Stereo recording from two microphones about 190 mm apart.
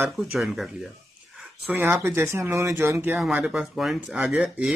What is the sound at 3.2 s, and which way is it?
Speech, centre (ahead or behind).